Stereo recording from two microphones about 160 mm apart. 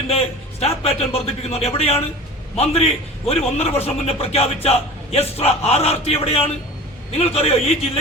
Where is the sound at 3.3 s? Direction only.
40° left (ahead or behind).